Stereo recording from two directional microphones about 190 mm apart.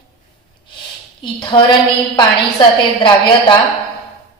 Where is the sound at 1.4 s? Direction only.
25° left (ahead or behind).